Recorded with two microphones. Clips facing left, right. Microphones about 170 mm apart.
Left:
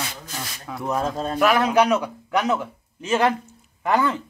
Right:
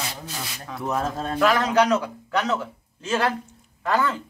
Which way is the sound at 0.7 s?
Centre (ahead or behind).